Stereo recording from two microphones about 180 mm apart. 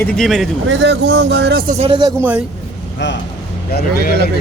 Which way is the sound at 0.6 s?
70° right (ahead or behind).